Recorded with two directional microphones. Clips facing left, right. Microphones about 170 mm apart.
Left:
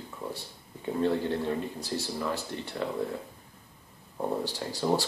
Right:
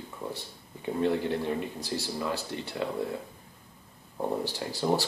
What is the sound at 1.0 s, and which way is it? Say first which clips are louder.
A man's voice: even; 15° right (ahead or behind).